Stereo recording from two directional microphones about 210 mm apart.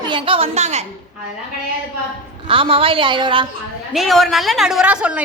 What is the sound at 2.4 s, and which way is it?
A woman's voice, 25° right (ahead or behind).